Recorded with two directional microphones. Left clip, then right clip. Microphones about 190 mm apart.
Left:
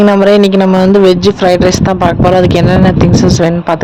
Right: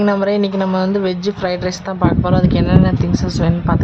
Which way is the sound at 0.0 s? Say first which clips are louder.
Left 10 dB; 35° left (ahead or behind).